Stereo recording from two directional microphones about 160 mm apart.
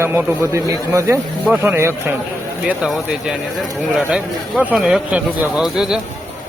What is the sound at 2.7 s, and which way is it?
Speech, 5° right (ahead or behind).